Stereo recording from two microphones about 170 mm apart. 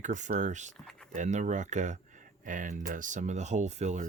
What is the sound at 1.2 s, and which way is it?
Speech, 45° right (ahead or behind).